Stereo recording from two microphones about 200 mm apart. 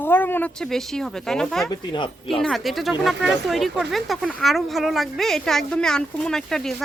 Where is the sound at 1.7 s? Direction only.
25° left (ahead or behind).